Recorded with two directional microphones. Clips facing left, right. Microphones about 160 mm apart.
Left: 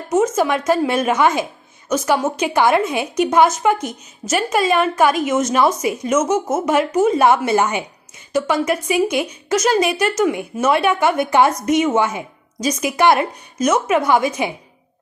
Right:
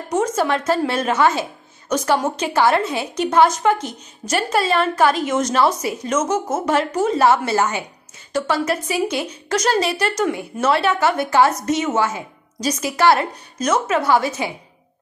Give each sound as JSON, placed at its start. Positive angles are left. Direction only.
{"t": 0.1, "sound": "a woman's voice", "side_deg": 10}